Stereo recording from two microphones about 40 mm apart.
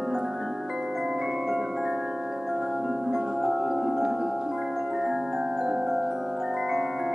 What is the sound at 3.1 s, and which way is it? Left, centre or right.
Music, centre.